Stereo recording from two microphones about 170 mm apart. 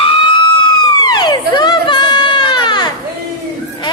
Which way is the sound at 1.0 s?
25° left (ahead or behind).